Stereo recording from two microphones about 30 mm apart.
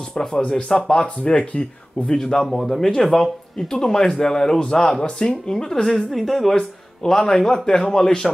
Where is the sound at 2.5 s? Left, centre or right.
Centre.